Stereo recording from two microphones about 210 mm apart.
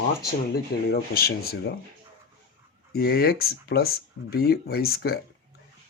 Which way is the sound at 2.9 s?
45° left (ahead or behind).